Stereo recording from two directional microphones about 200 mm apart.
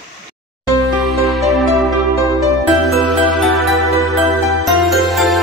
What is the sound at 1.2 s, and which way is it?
Music, centre (ahead or behind).